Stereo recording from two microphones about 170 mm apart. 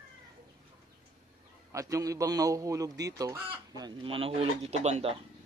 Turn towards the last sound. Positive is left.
turn(degrees=-40)  # may be behind; listen again after turning